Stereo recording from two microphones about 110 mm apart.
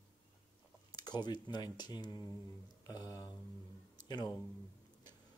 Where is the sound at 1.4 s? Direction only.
40° left (ahead or behind).